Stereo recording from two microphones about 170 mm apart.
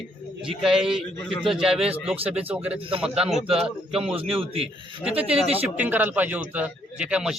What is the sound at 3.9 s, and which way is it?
Speech, 35° right (ahead or behind).